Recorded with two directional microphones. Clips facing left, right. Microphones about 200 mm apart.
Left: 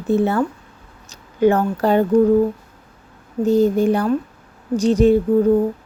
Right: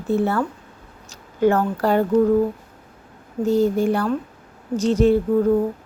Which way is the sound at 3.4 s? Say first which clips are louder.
Left 3 dB; 20° left (ahead or behind).